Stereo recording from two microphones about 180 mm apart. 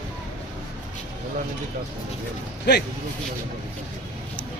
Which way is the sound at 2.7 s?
65° left (ahead or behind).